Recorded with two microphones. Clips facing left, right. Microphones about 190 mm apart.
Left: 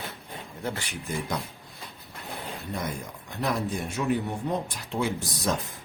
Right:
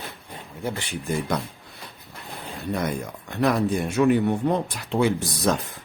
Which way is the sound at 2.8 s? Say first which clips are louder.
Right 6 dB; 70° right (ahead or behind).